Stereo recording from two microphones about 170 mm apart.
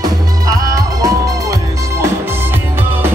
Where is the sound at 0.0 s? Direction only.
20° right (ahead or behind).